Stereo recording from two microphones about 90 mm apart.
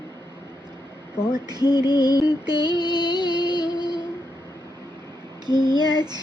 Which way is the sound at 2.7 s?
55° right (ahead or behind).